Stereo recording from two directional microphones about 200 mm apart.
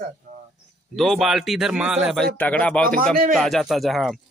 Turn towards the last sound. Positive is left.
turn(degrees=0)  # may be behind; listen again after turning